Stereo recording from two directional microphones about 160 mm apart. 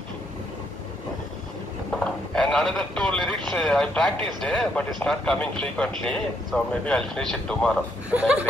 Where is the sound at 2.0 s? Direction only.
5° left (ahead or behind).